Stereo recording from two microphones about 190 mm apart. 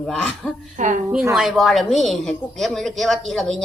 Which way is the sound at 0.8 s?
40° right (ahead or behind).